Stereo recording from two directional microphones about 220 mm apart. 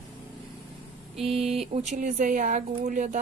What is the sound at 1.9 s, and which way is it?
Speech, 35° right (ahead or behind).